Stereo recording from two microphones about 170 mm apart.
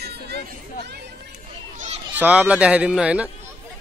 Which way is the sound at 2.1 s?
10° right (ahead or behind).